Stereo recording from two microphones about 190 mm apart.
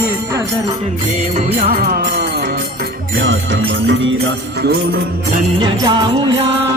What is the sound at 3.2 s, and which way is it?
Music, 70° right (ahead or behind).